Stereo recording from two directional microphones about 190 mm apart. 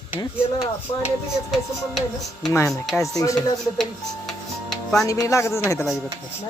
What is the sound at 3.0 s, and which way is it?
Speech, 15° left (ahead or behind).